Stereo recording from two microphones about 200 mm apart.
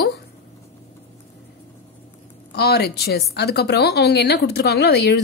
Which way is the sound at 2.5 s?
55° left (ahead or behind).